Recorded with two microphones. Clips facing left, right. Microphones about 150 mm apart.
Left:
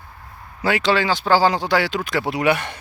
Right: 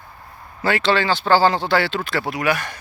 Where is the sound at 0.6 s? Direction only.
10° left (ahead or behind).